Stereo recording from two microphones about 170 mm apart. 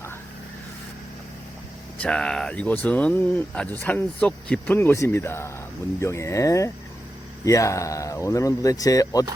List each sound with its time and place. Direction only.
2.0 s speech: 5° left (ahead or behind)